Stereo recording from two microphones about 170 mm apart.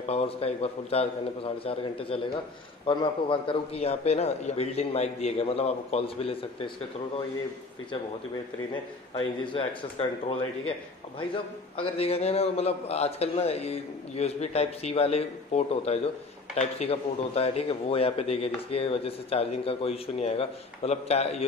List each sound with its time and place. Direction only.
0.1 s speech: 35° left (ahead or behind)
9.4 s speech: 30° left (ahead or behind)
11.7 s speech: 35° left (ahead or behind)